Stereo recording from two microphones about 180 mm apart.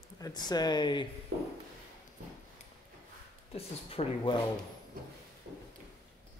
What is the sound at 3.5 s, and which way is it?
Speech, 35° left (ahead or behind).